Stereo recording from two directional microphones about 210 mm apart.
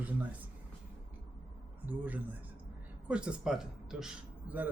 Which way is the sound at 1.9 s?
10° right (ahead or behind).